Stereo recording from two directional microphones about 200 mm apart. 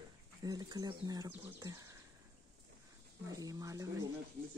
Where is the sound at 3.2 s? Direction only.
15° right (ahead or behind).